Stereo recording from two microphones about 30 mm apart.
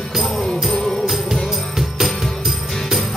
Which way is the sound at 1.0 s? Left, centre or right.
Centre.